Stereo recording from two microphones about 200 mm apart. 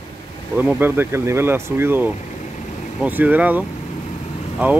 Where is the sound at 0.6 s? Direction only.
10° right (ahead or behind).